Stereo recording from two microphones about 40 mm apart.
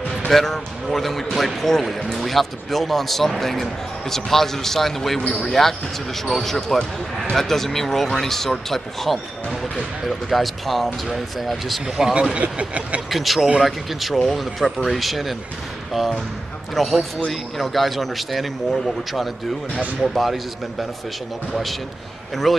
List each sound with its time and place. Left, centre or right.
0.3 s speech: centre
11.8 s speech: centre
12.4 s speech: right
13.1 s speech: centre
22.3 s speech: centre